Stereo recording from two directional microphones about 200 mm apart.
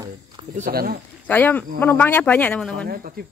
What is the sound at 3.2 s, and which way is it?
Speech, 50° right (ahead or behind).